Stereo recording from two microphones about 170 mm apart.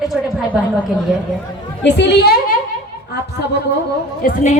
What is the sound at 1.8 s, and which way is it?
Speech, 90° left.